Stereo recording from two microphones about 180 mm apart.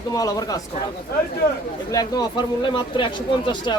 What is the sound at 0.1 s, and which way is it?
Speech, 20° left (ahead or behind).